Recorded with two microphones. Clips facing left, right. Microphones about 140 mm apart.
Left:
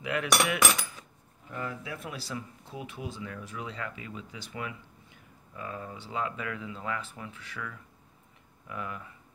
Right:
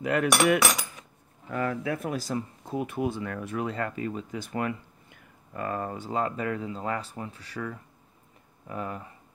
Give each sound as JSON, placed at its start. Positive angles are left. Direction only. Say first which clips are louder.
{"t": 0.0, "sound": "cutlery", "louder": "right 6 dB", "side_deg": -45}
{"t": 1.5, "sound": "speech", "louder": "right 8 dB", "side_deg": -70}